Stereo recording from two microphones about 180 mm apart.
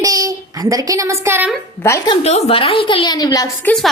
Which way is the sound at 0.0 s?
20° right (ahead or behind).